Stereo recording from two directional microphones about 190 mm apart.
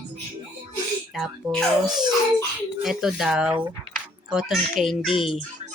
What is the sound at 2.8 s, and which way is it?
A child's voice, 5° right (ahead or behind).